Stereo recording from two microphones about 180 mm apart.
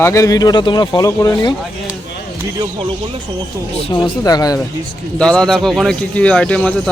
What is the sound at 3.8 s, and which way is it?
Speech, 25° left (ahead or behind).